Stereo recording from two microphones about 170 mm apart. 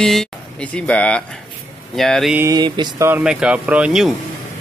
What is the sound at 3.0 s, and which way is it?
Speech, 10° right (ahead or behind).